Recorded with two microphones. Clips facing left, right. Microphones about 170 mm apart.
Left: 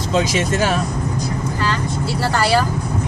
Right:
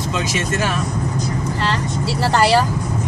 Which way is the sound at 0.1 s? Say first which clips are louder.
Left 6 dB; 30° left (ahead or behind).